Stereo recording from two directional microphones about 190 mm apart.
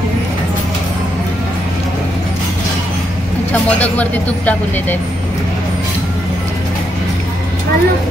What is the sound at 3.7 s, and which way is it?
Speech, 10° left (ahead or behind).